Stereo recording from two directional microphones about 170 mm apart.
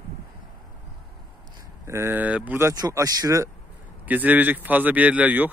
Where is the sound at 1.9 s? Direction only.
15° right (ahead or behind).